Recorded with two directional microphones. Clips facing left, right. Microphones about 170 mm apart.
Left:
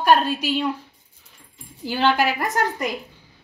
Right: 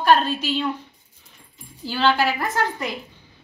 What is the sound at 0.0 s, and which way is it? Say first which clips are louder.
Speech: even; 10° left (ahead or behind).